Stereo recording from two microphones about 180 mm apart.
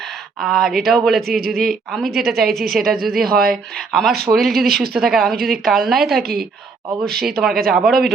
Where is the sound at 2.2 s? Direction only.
55° right (ahead or behind).